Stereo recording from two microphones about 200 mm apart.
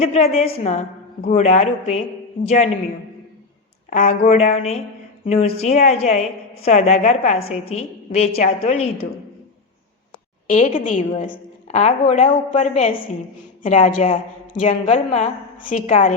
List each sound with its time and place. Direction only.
0.0 s a woman's voice: 30° left (ahead or behind)
3.8 s a woman's voice: 40° left (ahead or behind)
10.5 s a woman's voice: 40° left (ahead or behind)